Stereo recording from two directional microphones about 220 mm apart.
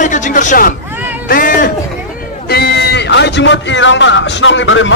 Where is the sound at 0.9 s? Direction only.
10° right (ahead or behind).